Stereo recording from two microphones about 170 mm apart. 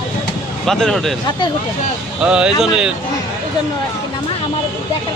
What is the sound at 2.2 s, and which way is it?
Speech, 5° right (ahead or behind).